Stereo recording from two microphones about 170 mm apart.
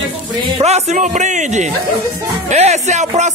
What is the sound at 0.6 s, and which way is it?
Speech, 40° right (ahead or behind).